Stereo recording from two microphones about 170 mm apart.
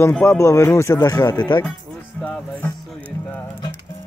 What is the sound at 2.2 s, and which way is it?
Music, 5° left (ahead or behind).